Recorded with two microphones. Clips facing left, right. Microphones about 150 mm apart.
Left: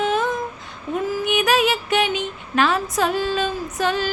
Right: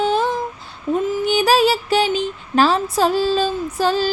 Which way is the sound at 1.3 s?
35° right (ahead or behind).